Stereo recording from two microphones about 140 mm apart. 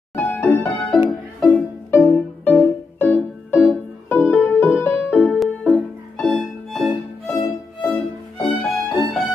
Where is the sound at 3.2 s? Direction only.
Centre (ahead or behind).